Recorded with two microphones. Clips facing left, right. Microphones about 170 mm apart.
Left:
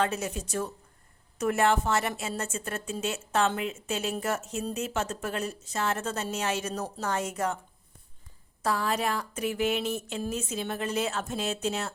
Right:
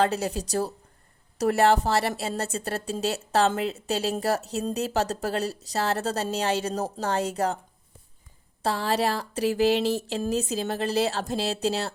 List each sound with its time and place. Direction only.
0.0 s a woman's voice: 35° right (ahead or behind)
8.6 s a woman's voice: 30° right (ahead or behind)